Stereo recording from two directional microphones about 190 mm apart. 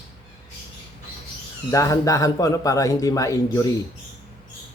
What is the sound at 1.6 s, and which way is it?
Speech, 15° left (ahead or behind).